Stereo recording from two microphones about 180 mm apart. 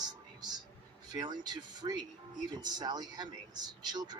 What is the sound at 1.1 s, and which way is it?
Speech, 25° right (ahead or behind).